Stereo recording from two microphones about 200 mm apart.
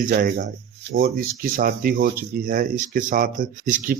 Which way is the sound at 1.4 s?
45° right (ahead or behind).